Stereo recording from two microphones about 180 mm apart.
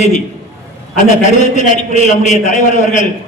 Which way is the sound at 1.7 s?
40° left (ahead or behind).